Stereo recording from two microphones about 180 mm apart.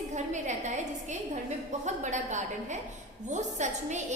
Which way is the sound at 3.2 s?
40° right (ahead or behind).